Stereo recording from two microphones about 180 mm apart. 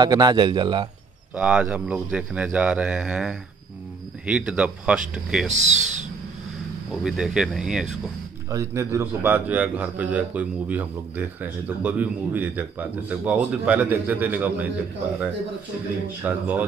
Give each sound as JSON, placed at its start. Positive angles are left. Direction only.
{"t": 0.0, "sound": "a man's voice", "side_deg": -25}
{"t": 1.3, "sound": "a man's voice", "side_deg": -5}
{"t": 5.5, "sound": "speech", "side_deg": -40}
{"t": 6.9, "sound": "speech", "side_deg": 0}
{"t": 8.5, "sound": "a man's voice", "side_deg": -15}
{"t": 16.2, "sound": "a man's voice", "side_deg": -10}